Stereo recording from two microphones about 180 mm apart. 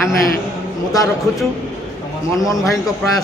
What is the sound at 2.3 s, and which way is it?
Speech, 20° left (ahead or behind).